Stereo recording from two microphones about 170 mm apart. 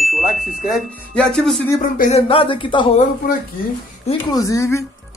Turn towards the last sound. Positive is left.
turn(degrees=20)  # may be behind; listen again after turning